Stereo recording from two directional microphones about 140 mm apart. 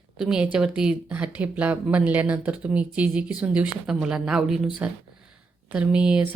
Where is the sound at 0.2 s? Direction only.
5° right (ahead or behind).